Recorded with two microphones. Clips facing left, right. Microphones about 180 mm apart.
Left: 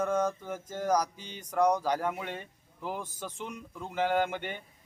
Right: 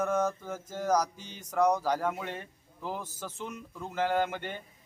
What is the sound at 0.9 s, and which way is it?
A man's voice, 10° left (ahead or behind).